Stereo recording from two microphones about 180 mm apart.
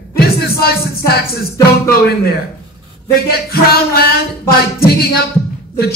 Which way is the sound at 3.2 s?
60° left (ahead or behind).